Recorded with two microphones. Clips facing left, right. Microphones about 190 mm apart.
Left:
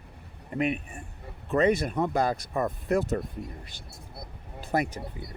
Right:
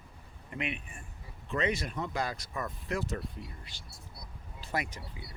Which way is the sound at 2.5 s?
40° left (ahead or behind).